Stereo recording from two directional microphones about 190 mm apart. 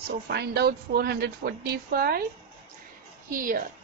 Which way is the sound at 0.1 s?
60° right (ahead or behind).